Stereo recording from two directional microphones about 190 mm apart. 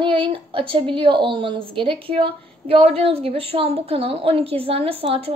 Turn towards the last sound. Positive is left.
turn(degrees=-30)  # may be behind; listen again after turning